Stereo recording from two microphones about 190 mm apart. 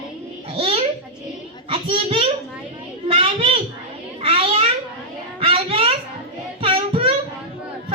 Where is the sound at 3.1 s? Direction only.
30° right (ahead or behind).